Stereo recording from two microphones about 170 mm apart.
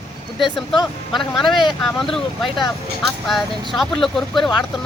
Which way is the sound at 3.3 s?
Centre (ahead or behind).